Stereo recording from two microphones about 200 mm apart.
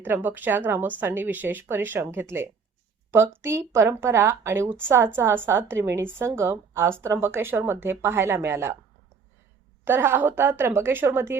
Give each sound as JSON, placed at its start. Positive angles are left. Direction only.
{"t": 0.0, "sound": "speech", "side_deg": -10}
{"t": 9.8, "sound": "speech", "side_deg": -10}